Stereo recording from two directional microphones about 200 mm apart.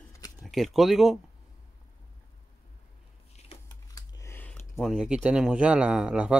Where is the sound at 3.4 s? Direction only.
20° left (ahead or behind); by 6.3 s 5° right (ahead or behind).